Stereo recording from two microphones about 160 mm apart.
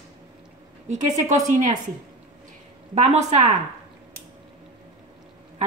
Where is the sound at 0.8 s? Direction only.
50° right (ahead or behind).